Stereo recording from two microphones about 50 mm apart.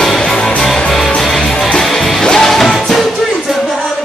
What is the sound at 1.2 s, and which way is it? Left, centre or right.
Music, centre.